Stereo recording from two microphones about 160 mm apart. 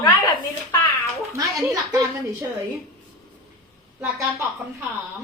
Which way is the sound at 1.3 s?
20° right (ahead or behind).